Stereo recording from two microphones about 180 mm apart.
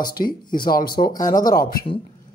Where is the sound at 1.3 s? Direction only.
50° left (ahead or behind).